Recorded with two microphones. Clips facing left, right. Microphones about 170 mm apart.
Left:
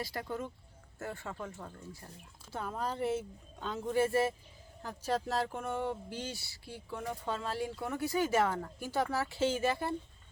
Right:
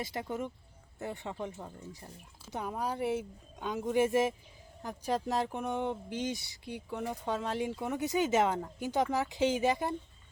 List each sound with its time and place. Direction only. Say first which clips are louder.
0.0 s speech: right 2 dB; 20° right (ahead or behind)